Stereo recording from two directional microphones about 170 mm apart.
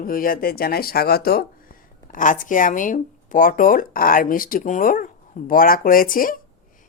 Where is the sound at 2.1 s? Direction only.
50° left (ahead or behind).